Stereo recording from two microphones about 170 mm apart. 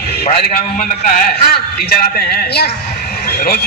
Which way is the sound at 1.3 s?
65° left (ahead or behind).